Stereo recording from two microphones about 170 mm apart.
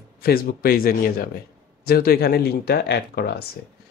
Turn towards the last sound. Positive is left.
turn(degrees=70)  # may be behind; listen again after turning